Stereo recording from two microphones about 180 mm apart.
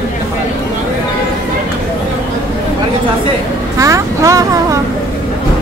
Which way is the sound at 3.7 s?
15° right (ahead or behind).